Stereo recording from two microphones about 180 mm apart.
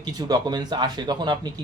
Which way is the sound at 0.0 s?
25° right (ahead or behind).